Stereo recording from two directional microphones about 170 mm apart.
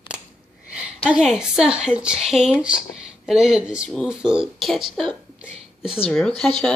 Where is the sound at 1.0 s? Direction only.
5° right (ahead or behind).